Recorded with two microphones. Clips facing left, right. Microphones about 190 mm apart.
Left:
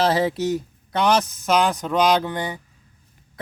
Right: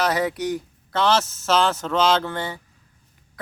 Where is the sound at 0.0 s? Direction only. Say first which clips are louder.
Left 3 dB; 25° left (ahead or behind).